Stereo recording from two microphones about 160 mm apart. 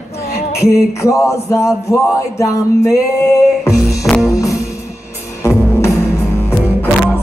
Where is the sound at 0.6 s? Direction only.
15° left (ahead or behind).